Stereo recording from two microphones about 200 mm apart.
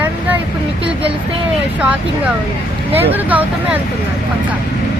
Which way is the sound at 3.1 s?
10° right (ahead or behind).